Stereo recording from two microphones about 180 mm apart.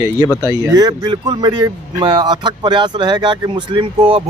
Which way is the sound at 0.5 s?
20° right (ahead or behind).